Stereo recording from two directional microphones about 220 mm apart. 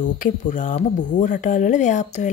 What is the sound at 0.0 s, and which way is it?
Speech, 35° left (ahead or behind).